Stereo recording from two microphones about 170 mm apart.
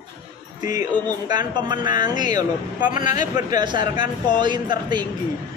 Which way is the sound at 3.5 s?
25° right (ahead or behind).